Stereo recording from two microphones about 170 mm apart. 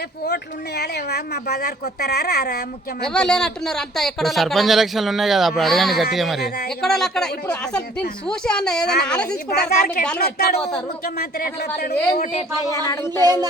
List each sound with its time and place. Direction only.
0.8 s speech: 75° left (ahead or behind)
3.1 s speech: 5° left (ahead or behind)
9.5 s speech: 70° left (ahead or behind)
12.5 s speech: 20° left (ahead or behind)